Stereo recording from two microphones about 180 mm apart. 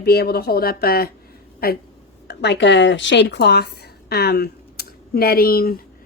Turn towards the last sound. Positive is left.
turn(degrees=55)  # may be behind; listen again after turning